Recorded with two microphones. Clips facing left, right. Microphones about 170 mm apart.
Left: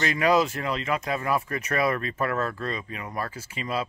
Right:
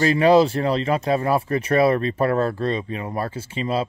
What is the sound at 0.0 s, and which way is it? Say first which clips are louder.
Speech: right 7 dB; 30° right (ahead or behind).